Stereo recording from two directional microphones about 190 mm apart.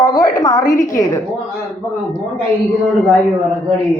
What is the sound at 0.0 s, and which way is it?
A woman's voice, 20° left (ahead or behind).